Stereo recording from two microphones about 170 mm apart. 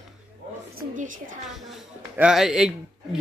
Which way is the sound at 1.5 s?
Centre (ahead or behind).